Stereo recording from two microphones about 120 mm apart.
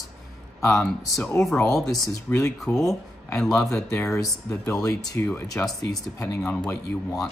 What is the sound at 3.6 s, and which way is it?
Speech, 25° left (ahead or behind).